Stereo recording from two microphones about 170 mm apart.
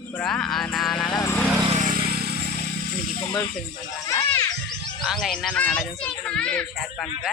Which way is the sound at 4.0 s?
20° left (ahead or behind).